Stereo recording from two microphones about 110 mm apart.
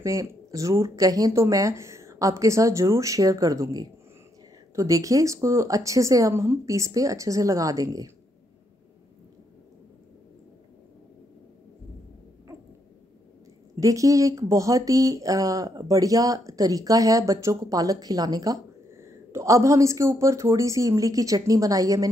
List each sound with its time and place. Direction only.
0.0 s speech: 30° right (ahead or behind)
13.7 s speech: 30° right (ahead or behind)